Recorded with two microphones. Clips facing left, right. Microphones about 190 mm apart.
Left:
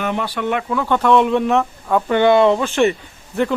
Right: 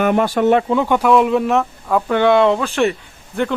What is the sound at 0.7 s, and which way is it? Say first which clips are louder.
Speech: right 2 dB; 15° right (ahead or behind).